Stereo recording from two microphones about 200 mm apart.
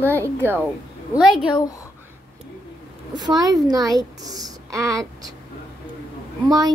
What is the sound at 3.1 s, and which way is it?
A woman's voice, 20° right (ahead or behind).